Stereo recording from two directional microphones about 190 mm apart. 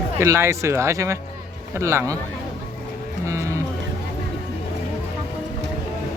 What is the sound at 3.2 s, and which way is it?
Music, 15° right (ahead or behind).